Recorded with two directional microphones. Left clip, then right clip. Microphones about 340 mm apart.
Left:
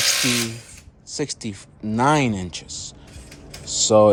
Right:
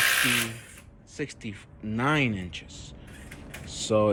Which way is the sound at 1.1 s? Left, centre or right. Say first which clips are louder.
Left 8 dB; centre.